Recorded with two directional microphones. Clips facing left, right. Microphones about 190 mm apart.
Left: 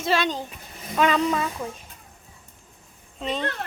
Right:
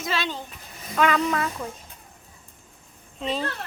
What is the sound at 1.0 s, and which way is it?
Speech, 20° left (ahead or behind).